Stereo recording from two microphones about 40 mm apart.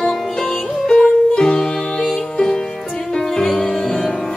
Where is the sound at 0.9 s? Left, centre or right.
Centre.